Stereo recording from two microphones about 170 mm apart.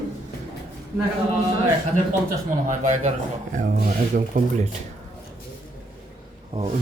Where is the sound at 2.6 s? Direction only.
45° right (ahead or behind).